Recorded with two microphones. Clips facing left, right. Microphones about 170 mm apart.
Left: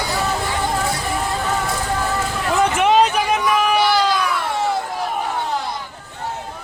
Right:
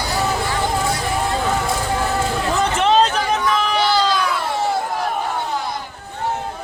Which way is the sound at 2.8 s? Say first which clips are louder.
Right 1 dB; 10° left (ahead or behind).